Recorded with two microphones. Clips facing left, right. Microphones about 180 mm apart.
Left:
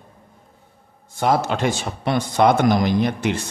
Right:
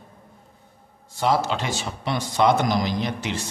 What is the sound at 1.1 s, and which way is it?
A man's voice, 50° left (ahead or behind).